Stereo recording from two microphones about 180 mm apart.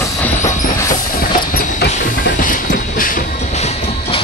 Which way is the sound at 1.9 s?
50° left (ahead or behind).